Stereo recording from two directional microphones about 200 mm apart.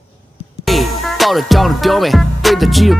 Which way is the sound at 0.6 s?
Centre (ahead or behind).